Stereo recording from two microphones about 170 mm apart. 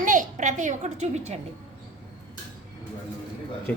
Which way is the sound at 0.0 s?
50° right (ahead or behind).